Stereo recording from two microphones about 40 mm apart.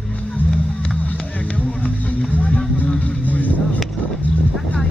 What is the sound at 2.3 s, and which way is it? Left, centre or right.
Music, left.